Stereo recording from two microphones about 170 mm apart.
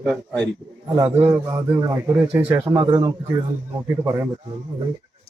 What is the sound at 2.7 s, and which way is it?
Speech, 30° right (ahead or behind).